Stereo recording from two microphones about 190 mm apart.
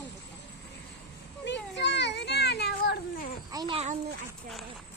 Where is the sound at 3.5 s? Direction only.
25° right (ahead or behind).